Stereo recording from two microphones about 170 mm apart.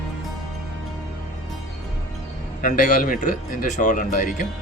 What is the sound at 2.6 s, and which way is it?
Speech, 50° left (ahead or behind).